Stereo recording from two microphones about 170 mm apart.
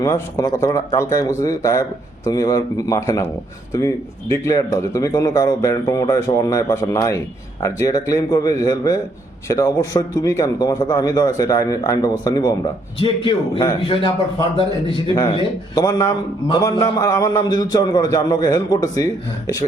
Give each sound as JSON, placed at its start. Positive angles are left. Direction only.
{"t": 0.0, "sound": "a man's voice", "side_deg": 20}